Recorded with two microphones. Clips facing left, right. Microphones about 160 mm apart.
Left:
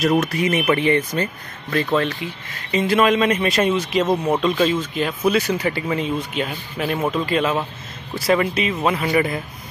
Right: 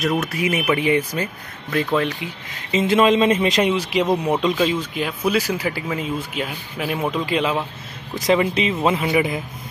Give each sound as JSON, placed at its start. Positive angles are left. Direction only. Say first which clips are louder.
{"t": 0.0, "sound": "speech", "louder": "left 3 dB", "side_deg": 0}